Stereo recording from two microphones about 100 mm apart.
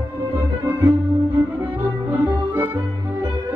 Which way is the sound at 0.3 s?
20° right (ahead or behind).